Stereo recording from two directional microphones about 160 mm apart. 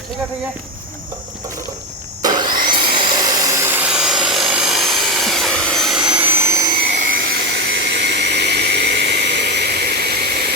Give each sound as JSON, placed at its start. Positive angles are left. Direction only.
{"t": 2.2, "sound": "sawing", "side_deg": -25}
{"t": 2.6, "sound": "helicopter", "side_deg": -30}
{"t": 7.0, "sound": "a sound", "side_deg": -70}